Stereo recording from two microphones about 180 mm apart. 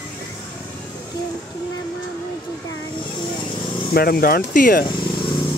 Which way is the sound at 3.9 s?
55° left (ahead or behind).